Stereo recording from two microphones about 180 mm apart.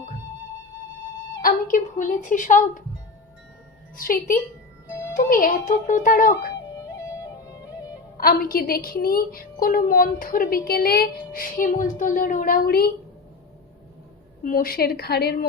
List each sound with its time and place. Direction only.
1.4 s a child's voice: 50° left (ahead or behind)
3.9 s a child's voice: 50° left (ahead or behind)
4.9 s music: 15° left (ahead or behind)
5.1 s a child's voice: 50° left (ahead or behind)
8.2 s a child's voice: 55° left (ahead or behind)
14.4 s a woman's voice: 55° left (ahead or behind)